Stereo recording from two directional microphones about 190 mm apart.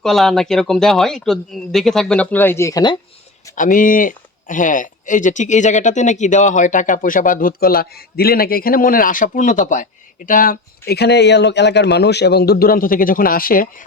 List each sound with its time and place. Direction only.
0.0 s speech: centre (ahead or behind); by 3.0 s 20° left (ahead or behind)
3.5 s speech: 45° left (ahead or behind)